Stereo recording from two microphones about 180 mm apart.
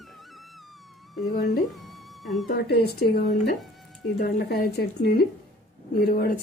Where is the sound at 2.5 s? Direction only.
60° left (ahead or behind).